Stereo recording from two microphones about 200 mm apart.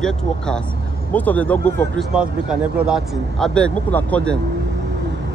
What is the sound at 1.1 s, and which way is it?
Speech, 10° left (ahead or behind).